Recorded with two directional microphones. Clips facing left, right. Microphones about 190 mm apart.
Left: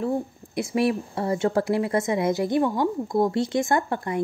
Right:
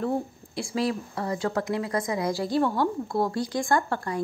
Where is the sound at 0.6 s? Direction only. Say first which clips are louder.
Left 4 dB; 25° left (ahead or behind).